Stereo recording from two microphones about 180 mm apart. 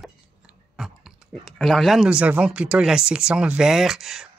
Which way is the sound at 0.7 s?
Centre (ahead or behind).